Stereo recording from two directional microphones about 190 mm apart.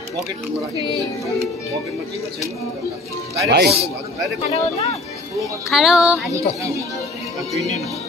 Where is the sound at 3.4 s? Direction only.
55° right (ahead or behind).